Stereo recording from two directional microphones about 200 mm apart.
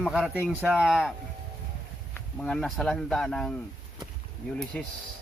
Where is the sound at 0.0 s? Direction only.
5° right (ahead or behind).